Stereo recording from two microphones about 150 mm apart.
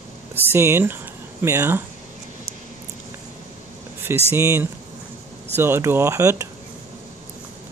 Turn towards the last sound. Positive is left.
turn(degrees=-20)  # may be behind; listen again after turning